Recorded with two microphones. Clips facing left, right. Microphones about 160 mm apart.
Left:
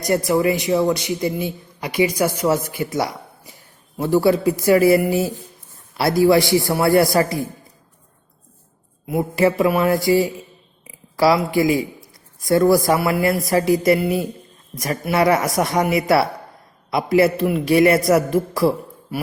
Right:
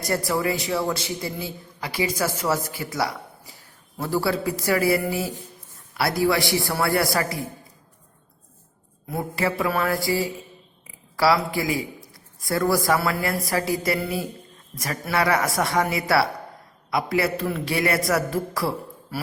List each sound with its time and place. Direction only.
0.0 s a man's voice: 20° left (ahead or behind)
9.3 s a man's voice: 20° left (ahead or behind)